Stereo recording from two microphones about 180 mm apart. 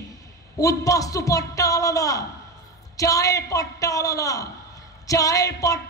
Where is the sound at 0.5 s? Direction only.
20° left (ahead or behind).